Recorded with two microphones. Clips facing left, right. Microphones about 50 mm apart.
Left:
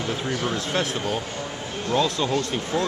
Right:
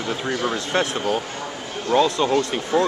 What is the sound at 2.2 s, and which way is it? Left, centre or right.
Speech, right.